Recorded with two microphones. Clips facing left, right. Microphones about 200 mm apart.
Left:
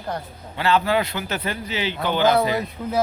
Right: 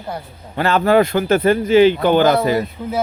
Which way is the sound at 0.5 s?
50° right (ahead or behind).